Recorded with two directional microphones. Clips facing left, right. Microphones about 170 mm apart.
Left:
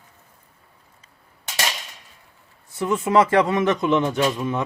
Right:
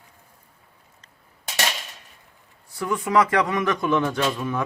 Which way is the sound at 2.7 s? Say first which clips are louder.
Left 3 dB; 25° left (ahead or behind).